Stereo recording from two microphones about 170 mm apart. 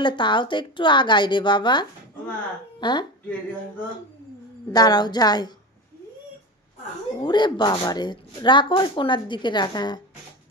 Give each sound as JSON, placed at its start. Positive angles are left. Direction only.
{"t": 0.0, "sound": "speech", "side_deg": 25}
{"t": 4.7, "sound": "speech", "side_deg": 25}
{"t": 7.2, "sound": "speech", "side_deg": 25}